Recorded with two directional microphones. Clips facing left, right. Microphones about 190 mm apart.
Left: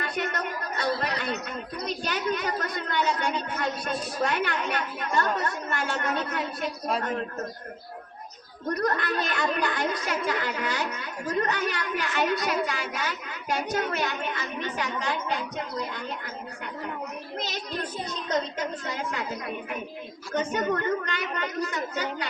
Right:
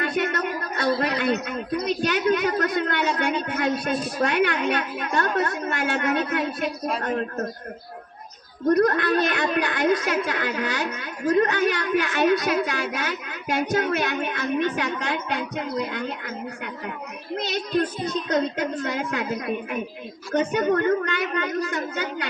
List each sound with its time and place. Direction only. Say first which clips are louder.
0.0 s a sound: right 6 dB; 65° right (ahead or behind)
0.9 s a man's voice: right 7 dB; 65° right (ahead or behind)
8.7 s a man's voice: right 8 dB; 55° right (ahead or behind)
17.4 s a man's voice: right 11 dB; 60° right (ahead or behind)
20.7 s a man's voice: right 6 dB; 55° right (ahead or behind)